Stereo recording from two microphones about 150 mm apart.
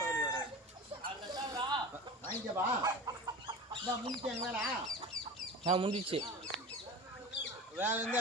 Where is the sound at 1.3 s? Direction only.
25° right (ahead or behind).